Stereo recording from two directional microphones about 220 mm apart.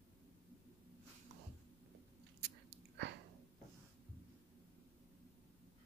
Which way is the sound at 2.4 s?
50° right (ahead or behind).